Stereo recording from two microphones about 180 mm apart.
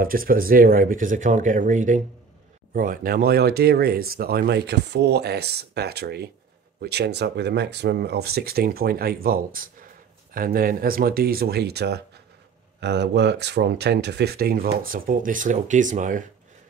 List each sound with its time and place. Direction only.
0.0 s speech: 55° right (ahead or behind)